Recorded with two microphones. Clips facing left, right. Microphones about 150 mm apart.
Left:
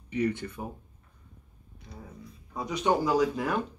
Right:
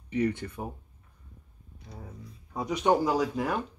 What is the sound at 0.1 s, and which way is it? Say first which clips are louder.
Speech: right 1 dB; 40° right (ahead or behind).